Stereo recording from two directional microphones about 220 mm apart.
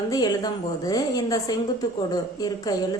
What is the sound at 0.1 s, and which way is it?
A woman's voice, 15° left (ahead or behind).